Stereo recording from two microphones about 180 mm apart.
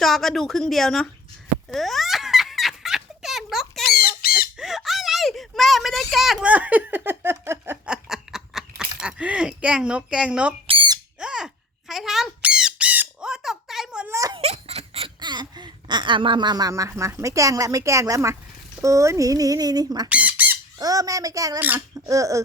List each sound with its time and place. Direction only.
0.0 s speech: centre (ahead or behind)
1.7 s giggle: centre (ahead or behind)
3.8 s squawk: 55° left (ahead or behind)
4.4 s a sound: 5° right (ahead or behind)
10.7 s squawk: 25° right (ahead or behind)
11.2 s a sound: 5° right (ahead or behind)
14.2 s baby cry: 20° right (ahead or behind)
14.4 s a sound: 35° right (ahead or behind); by 16.9 s 20° right (ahead or behind)
17.0 s speech: 15° right (ahead or behind)
20.1 s squawk: 10° right (ahead or behind)
20.7 s speech: 20° right (ahead or behind)